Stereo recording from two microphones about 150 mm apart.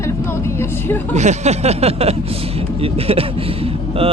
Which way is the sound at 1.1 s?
50° right (ahead or behind).